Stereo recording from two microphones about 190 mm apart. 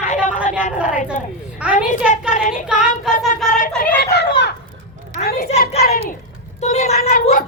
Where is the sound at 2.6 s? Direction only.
5° right (ahead or behind).